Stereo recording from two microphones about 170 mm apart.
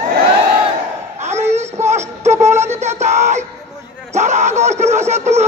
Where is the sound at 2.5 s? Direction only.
15° right (ahead or behind).